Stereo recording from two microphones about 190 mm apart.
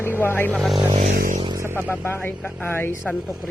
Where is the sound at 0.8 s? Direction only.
25° right (ahead or behind).